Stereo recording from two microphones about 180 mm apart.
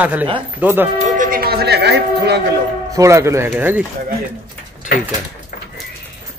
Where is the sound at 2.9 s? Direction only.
15° right (ahead or behind).